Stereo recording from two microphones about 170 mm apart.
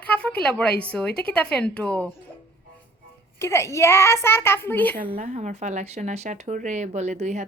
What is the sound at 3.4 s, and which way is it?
Speech, 15° left (ahead or behind).